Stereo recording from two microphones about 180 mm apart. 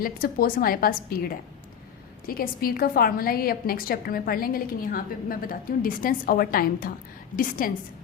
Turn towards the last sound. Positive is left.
turn(degrees=50)  # may be behind; listen again after turning